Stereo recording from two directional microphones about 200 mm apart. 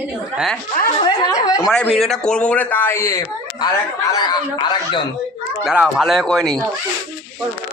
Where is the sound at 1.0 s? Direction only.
20° left (ahead or behind).